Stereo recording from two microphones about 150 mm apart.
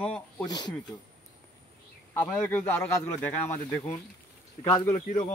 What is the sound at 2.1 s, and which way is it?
Speech, 10° left (ahead or behind).